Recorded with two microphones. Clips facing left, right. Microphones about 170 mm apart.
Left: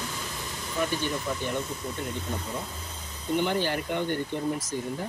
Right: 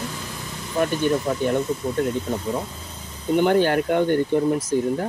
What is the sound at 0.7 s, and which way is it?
Speech, 55° right (ahead or behind).